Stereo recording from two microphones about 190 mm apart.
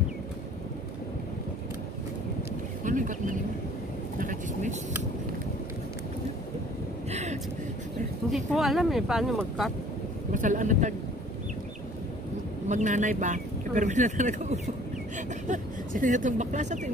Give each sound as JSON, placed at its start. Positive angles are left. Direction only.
{"t": 2.8, "sound": "speech", "side_deg": -45}
{"t": 7.1, "sound": "vehicle", "side_deg": -35}
{"t": 8.5, "sound": "speech", "side_deg": 0}
{"t": 10.3, "sound": "speech", "side_deg": -40}
{"t": 12.6, "sound": "speech", "side_deg": -40}